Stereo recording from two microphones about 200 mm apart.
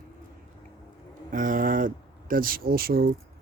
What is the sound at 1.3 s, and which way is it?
Speech, 40° right (ahead or behind).